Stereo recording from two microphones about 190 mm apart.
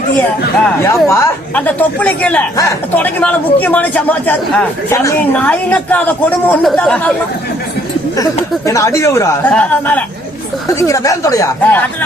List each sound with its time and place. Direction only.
0.8 s a woman's voice: 15° left (ahead or behind)
8.1 s a woman's voice: 15° left (ahead or behind)